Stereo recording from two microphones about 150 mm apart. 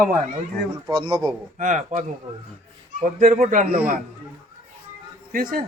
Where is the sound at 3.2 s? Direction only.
60° right (ahead or behind).